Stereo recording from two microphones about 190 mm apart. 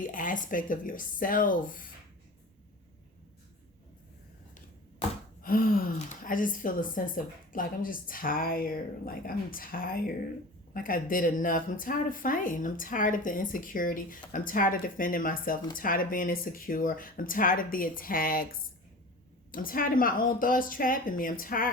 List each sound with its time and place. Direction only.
0.0 s a woman's voice: 45° left (ahead or behind)
5.4 s a woman's voice: 50° left (ahead or behind)